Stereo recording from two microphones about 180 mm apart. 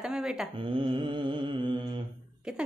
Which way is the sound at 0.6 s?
30° right (ahead or behind).